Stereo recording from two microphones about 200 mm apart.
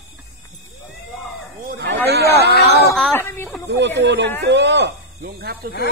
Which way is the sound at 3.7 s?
60° right (ahead or behind).